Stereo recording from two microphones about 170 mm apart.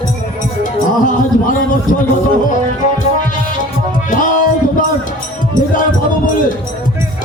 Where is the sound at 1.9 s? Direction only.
50° left (ahead or behind).